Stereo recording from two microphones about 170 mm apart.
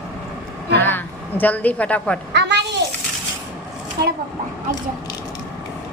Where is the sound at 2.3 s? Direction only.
85° right.